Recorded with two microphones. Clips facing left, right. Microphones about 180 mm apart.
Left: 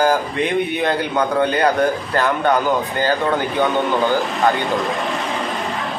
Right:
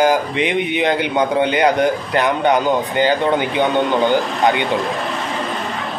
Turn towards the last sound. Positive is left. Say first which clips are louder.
# right 2 dB
turn(degrees=-20)  # may be behind; listen again after turning